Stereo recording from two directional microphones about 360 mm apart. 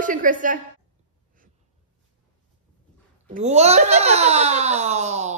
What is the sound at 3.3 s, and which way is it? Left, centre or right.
A woman's voice, centre.